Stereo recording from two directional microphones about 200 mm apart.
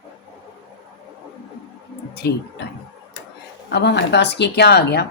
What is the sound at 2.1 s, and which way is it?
Speech, 55° left (ahead or behind).